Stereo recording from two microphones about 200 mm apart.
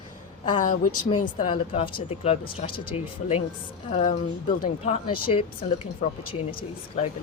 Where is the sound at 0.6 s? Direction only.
40° left (ahead or behind).